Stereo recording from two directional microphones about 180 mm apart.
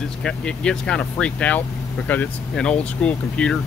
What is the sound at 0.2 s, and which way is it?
Speech, 5° left (ahead or behind).